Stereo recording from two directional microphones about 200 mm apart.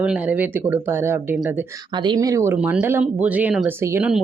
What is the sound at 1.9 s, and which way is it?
Speech, 20° right (ahead or behind).